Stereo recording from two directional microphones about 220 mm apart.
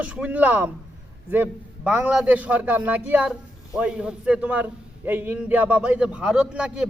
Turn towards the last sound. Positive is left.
turn(degrees=-5)  # may be behind; listen again after turning